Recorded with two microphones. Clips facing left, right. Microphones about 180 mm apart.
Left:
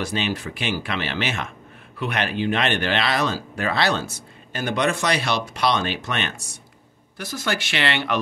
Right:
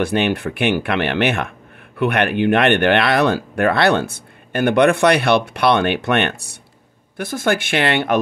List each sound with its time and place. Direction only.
0.0 s speech: 60° right (ahead or behind)